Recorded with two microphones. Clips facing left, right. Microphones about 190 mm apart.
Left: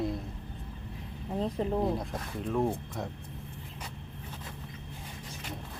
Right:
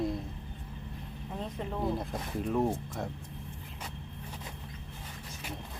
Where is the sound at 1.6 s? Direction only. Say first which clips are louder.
Left 7 dB; 35° left (ahead or behind).